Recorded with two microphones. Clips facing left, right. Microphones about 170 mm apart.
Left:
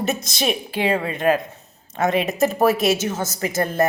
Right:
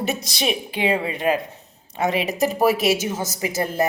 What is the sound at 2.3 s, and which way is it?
A man's voice, 10° right (ahead or behind).